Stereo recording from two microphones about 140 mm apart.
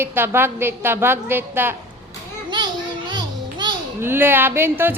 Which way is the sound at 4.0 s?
15° right (ahead or behind).